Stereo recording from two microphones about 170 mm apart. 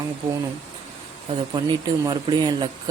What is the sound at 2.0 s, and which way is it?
Speech, 25° right (ahead or behind).